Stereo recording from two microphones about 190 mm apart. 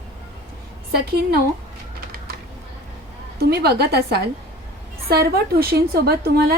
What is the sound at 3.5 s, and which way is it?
A woman's voice, 60° right (ahead or behind).